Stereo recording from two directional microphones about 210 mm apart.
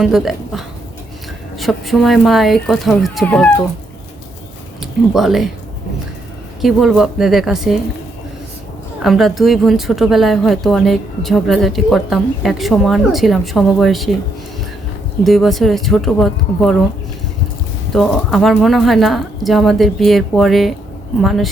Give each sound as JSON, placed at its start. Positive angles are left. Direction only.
{"t": 0.0, "sound": "a woman's voice", "side_deg": 0}
{"t": 4.8, "sound": "a woman's voice", "side_deg": 0}
{"t": 6.6, "sound": "a woman's voice", "side_deg": 0}
{"t": 9.0, "sound": "a woman's voice", "side_deg": 0}
{"t": 15.2, "sound": "a woman's voice", "side_deg": 0}
{"t": 17.9, "sound": "a woman's voice", "side_deg": 0}